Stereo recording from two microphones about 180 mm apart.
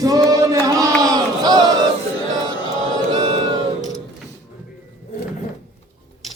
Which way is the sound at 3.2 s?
25° right (ahead or behind).